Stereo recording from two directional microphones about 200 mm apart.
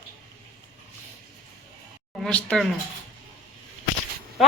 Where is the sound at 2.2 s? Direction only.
5° left (ahead or behind).